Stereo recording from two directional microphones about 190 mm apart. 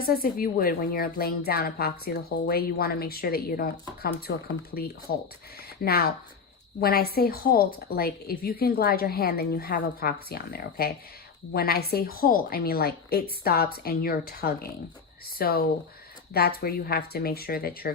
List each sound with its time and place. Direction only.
0.0 s a woman's voice: 50° left (ahead or behind)